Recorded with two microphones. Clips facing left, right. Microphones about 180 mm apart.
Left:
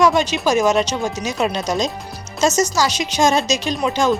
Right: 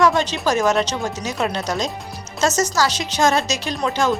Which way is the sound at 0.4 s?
15° left (ahead or behind).